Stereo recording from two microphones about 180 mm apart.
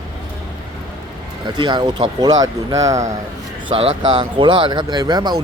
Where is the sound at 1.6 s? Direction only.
25° right (ahead or behind).